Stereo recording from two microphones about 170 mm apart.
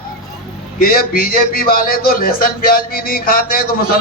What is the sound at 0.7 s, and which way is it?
A man's voice, 55° left (ahead or behind).